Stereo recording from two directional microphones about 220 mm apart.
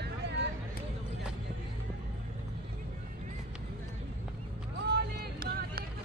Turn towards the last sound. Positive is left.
turn(degrees=-45)  # may be behind; listen again after turning